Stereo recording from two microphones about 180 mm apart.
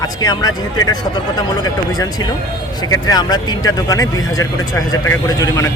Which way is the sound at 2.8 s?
20° left (ahead or behind).